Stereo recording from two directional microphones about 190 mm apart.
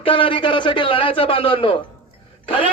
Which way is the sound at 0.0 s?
25° left (ahead or behind).